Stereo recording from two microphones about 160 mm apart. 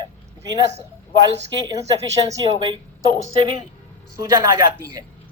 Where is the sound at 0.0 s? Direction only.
25° right (ahead or behind).